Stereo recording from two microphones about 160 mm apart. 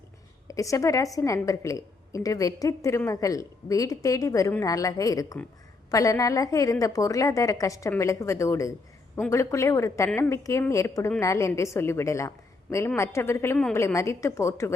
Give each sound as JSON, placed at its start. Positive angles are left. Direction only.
{"t": 0.4, "sound": "a woman's voice", "side_deg": 20}